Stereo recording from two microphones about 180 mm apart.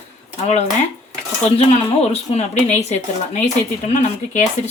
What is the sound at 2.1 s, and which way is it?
Speech, 40° left (ahead or behind).